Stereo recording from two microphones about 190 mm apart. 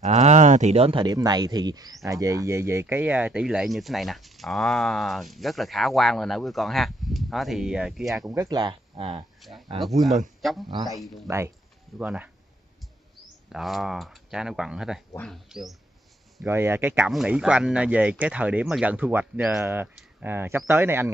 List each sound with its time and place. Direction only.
0.0 s speech: 35° right (ahead or behind); by 8.3 s centre (ahead or behind)
8.3 s speech: 20° right (ahead or behind)
9.4 s speech: centre (ahead or behind)
11.2 s speech: 15° right (ahead or behind)
13.5 s speech: centre (ahead or behind)
16.4 s speech: 15° right (ahead or behind)